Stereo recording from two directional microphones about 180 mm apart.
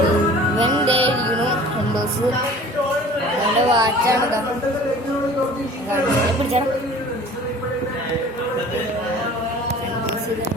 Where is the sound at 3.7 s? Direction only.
20° right (ahead or behind).